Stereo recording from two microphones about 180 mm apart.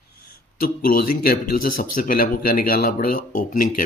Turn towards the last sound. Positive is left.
turn(degrees=45)  # may be behind; listen again after turning